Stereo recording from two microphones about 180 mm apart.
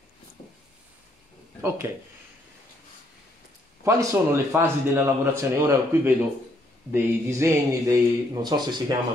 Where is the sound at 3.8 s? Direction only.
15° right (ahead or behind).